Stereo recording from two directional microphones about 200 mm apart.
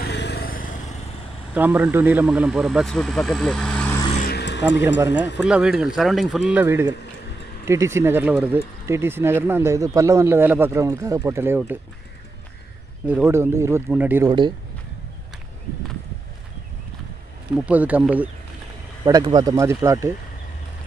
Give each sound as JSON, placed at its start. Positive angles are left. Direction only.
{"t": 0.0, "sound": "vehicle", "side_deg": 55}
{"t": 1.5, "sound": "speech", "side_deg": -10}
{"t": 4.2, "sound": "vehicle", "side_deg": 55}
{"t": 5.1, "sound": "speech", "side_deg": 60}
{"t": 5.4, "sound": "speech", "side_deg": -5}
{"t": 13.0, "sound": "speech", "side_deg": -10}
{"t": 17.6, "sound": "speech", "side_deg": -5}
{"t": 19.0, "sound": "speech", "side_deg": -20}